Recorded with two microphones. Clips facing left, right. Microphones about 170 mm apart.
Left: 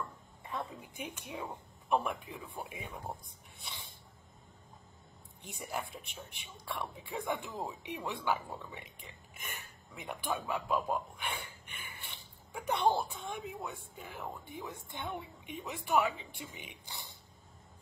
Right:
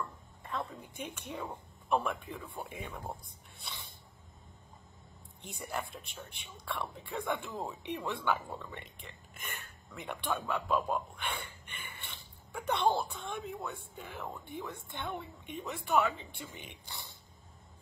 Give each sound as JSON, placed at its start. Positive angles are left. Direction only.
{"t": 0.4, "sound": "a sound", "side_deg": 10}
{"t": 1.2, "sound": "a man's voice", "side_deg": 5}
{"t": 5.4, "sound": "a woman's voice", "side_deg": 15}